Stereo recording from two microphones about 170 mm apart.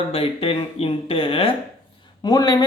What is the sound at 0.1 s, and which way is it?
Speech, 35° left (ahead or behind).